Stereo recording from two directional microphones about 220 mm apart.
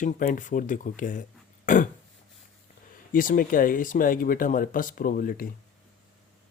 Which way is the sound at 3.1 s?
40° left (ahead or behind).